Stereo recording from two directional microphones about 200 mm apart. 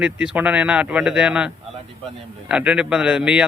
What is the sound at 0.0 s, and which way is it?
A man's voice, 5° right (ahead or behind).